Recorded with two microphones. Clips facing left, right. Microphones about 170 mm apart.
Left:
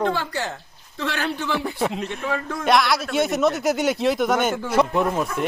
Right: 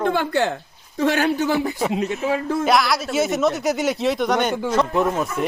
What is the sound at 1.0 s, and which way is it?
Speech, 45° right (ahead or behind).